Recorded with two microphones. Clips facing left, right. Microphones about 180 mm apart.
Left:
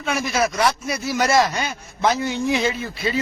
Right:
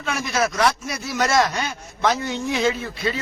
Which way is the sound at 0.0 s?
Centre (ahead or behind).